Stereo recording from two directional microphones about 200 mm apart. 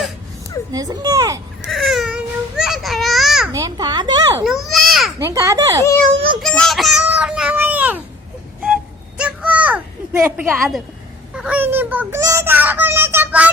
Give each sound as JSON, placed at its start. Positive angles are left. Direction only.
{"t": 0.7, "sound": "speech", "side_deg": -20}
{"t": 1.6, "sound": "babbling", "side_deg": 0}
{"t": 3.5, "sound": "a child's voice", "side_deg": -20}
{"t": 4.4, "sound": "baby cry", "side_deg": 0}
{"t": 5.2, "sound": "speech", "side_deg": -15}
{"t": 6.4, "sound": "child singing", "side_deg": 5}
{"t": 8.6, "sound": "a sound", "side_deg": -5}
{"t": 11.3, "sound": "child singing", "side_deg": -5}